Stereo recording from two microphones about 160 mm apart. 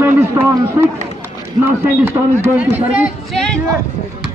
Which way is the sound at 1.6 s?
15° right (ahead or behind).